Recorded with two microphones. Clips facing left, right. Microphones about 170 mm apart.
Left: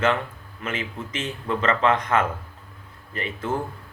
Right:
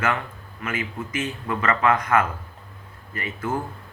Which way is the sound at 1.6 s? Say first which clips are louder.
Even; 25° left (ahead or behind).